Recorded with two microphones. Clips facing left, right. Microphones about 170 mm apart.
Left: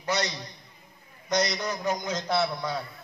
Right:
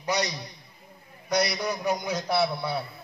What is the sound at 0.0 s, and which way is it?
Speech, 15° right (ahead or behind).